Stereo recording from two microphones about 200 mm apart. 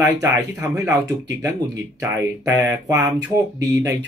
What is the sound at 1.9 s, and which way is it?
Speech, 15° right (ahead or behind).